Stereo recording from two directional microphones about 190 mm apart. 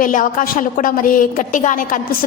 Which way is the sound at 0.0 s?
45° left (ahead or behind).